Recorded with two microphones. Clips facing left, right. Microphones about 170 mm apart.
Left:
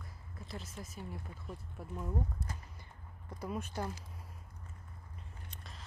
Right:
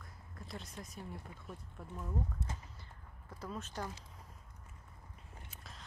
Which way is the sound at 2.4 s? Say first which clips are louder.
Even; 20° right (ahead or behind).